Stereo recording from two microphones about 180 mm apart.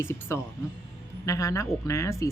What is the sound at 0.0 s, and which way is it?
A man's voice, 15° left (ahead or behind).